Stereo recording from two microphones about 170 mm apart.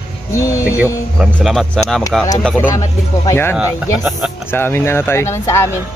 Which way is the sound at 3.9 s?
Centre (ahead or behind).